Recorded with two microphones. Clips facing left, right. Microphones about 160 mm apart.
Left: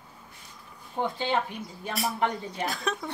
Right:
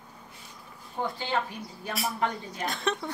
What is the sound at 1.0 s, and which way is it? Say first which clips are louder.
Speech: left 2 dB; 25° left (ahead or behind).